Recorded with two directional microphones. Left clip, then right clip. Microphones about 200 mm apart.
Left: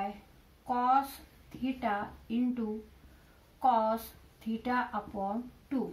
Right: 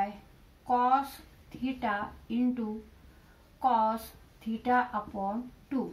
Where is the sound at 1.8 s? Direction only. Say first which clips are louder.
Right 1 dB; 20° left (ahead or behind).